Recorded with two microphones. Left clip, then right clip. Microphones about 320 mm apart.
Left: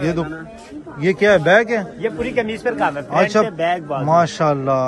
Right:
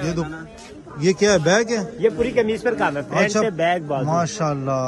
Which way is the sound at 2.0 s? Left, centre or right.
Right.